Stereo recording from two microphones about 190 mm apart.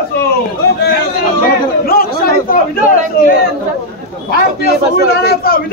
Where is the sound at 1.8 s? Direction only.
50° left (ahead or behind).